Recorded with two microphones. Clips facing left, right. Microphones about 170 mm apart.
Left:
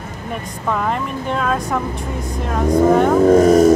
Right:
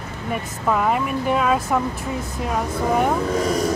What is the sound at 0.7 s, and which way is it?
Speech, 5° right (ahead or behind).